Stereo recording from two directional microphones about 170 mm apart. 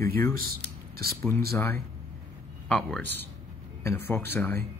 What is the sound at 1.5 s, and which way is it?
Speech, 15° left (ahead or behind).